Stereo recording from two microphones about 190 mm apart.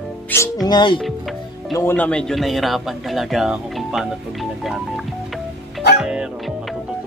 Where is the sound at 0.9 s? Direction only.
Centre (ahead or behind).